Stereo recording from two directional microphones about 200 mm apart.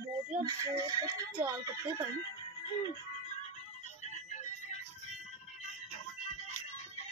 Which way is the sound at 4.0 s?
35° left (ahead or behind).